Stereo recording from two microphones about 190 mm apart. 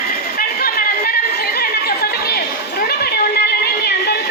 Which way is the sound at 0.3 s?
50° left (ahead or behind).